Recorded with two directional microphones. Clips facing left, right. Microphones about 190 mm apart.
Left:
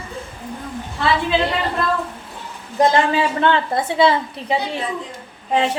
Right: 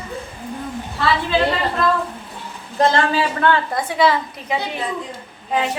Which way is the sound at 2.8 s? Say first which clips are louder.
Left 1 dB; 20° left (ahead or behind).